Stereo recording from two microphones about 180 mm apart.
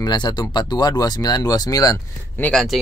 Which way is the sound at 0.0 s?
25° left (ahead or behind).